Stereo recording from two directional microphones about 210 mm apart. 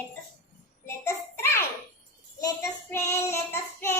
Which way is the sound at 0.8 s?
10° left (ahead or behind).